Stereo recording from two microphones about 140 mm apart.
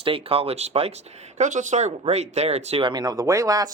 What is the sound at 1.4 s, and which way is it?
Speech, 60° right (ahead or behind).